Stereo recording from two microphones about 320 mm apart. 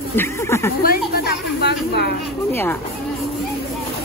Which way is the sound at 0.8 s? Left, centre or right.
Left.